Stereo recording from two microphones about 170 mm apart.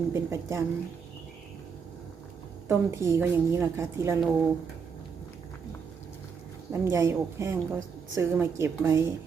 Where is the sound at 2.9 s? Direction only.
15° right (ahead or behind).